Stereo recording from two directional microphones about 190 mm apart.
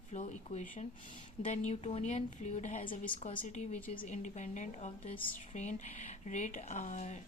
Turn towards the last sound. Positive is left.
turn(degrees=40)  # may be behind; listen again after turning